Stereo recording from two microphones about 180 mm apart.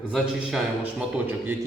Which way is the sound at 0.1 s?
Centre (ahead or behind).